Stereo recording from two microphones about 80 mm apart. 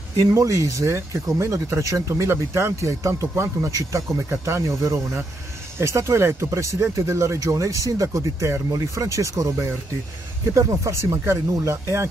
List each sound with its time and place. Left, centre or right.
0.3 s speech: right